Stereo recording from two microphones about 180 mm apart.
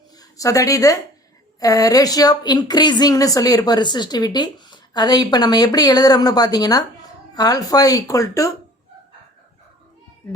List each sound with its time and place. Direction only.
0.2 s speech: 20° left (ahead or behind)